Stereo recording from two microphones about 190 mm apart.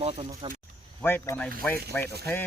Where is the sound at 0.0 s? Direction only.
30° right (ahead or behind).